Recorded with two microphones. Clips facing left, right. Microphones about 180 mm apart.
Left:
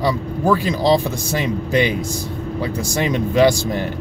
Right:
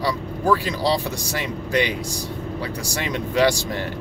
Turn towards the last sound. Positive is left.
turn(degrees=20)  # may be behind; listen again after turning